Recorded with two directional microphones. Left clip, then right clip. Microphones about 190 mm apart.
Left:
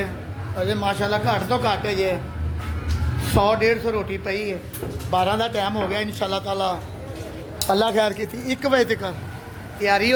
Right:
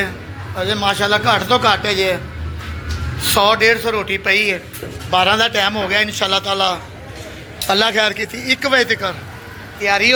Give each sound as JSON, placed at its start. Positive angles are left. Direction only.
{"t": 0.6, "sound": "a man's voice", "side_deg": 0}
{"t": 3.2, "sound": "a man's voice", "side_deg": 0}
{"t": 7.7, "sound": "a man's voice", "side_deg": -10}
{"t": 7.9, "sound": "a man's voice", "side_deg": 20}